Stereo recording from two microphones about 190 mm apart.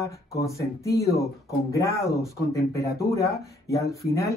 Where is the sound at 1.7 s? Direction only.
15° left (ahead or behind).